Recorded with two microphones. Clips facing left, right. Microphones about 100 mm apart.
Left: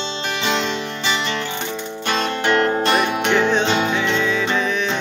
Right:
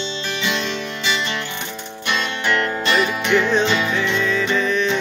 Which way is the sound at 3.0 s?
60° left (ahead or behind).